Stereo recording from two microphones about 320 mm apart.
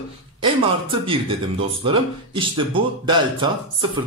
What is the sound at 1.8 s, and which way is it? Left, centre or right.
Speech, centre.